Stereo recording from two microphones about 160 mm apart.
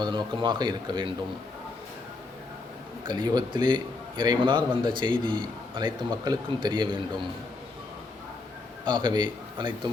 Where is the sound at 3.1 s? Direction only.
25° right (ahead or behind).